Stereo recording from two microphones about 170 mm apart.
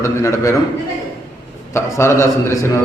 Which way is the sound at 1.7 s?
15° left (ahead or behind).